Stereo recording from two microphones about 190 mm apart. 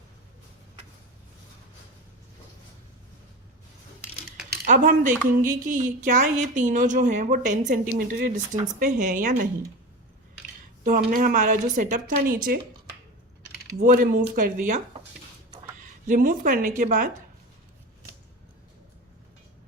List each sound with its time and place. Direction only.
4.4 s a woman's voice: 50° right (ahead or behind)
10.8 s a woman's voice: 45° right (ahead or behind)
13.7 s a woman's voice: 50° right (ahead or behind)
16.0 s a woman's voice: 45° right (ahead or behind)